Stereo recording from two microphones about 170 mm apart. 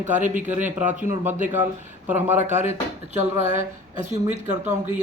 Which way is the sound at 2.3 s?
45° right (ahead or behind).